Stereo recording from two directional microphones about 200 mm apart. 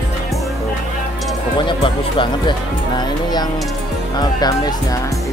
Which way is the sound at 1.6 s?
25° left (ahead or behind).